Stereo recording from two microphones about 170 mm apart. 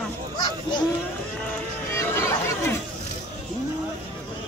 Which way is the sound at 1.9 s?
15° left (ahead or behind).